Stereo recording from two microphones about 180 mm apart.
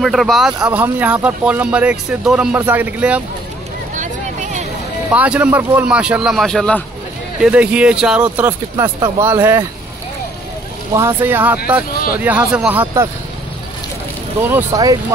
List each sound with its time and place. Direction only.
0.0 s a man's voice: centre (ahead or behind)
3.9 s a sound: 45° right (ahead or behind)
5.1 s a man's voice: 5° right (ahead or behind)
7.4 s speech: 5° right (ahead or behind)
11.0 s speech: 15° right (ahead or behind)
14.5 s speech: 20° right (ahead or behind)